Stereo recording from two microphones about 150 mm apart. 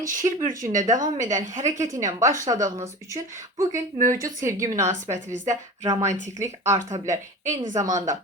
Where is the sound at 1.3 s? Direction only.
55° right (ahead or behind).